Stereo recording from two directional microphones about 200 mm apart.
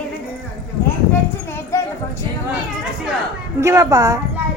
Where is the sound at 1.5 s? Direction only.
15° left (ahead or behind).